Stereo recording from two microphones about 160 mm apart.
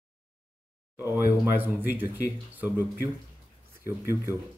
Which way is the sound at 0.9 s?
15° right (ahead or behind).